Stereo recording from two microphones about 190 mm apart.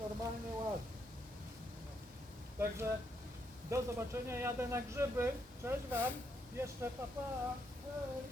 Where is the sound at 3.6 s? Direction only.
15° right (ahead or behind).